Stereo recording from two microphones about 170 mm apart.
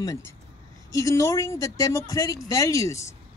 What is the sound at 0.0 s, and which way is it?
A woman's voice, 20° left (ahead or behind).